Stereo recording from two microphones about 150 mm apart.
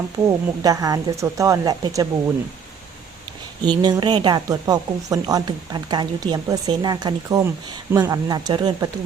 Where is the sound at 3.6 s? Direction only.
30° right (ahead or behind).